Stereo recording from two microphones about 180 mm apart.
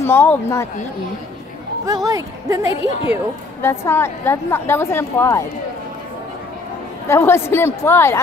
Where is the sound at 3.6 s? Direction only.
15° left (ahead or behind).